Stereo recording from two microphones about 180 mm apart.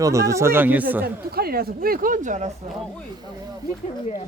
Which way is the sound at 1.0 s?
60° right (ahead or behind).